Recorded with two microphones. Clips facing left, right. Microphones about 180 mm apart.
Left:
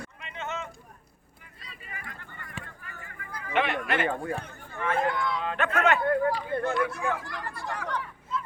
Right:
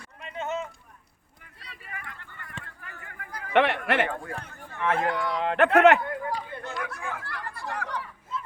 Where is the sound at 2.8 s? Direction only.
65° right (ahead or behind).